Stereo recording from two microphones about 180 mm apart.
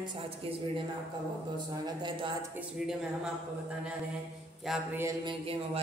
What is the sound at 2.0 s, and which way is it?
Speech, 25° right (ahead or behind).